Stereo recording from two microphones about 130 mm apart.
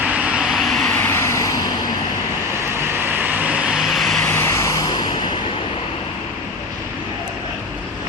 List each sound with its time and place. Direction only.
0.3 s vehicle: 5° right (ahead or behind)
0.9 s vehicle: 15° left (ahead or behind)
2.9 s vehicle: 15° right (ahead or behind); by 4.3 s centre (ahead or behind)
4.3 s vehicle: 15° left (ahead or behind)